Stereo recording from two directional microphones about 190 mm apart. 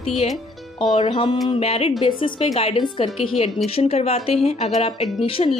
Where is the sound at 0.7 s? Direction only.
25° left (ahead or behind).